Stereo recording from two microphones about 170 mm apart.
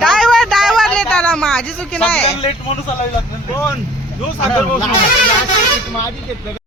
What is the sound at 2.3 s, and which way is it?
Speech, 35° left (ahead or behind).